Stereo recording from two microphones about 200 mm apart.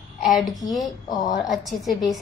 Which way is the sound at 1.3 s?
Centre (ahead or behind).